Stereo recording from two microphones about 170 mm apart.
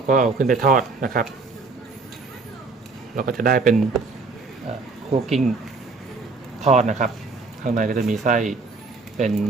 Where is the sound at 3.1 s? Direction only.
50° right (ahead or behind).